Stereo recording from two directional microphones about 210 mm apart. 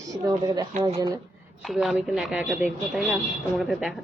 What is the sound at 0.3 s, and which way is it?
Speech, 20° right (ahead or behind).